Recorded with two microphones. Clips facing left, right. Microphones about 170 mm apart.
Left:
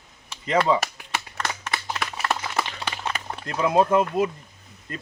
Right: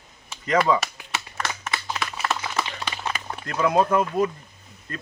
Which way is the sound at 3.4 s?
25° left (ahead or behind).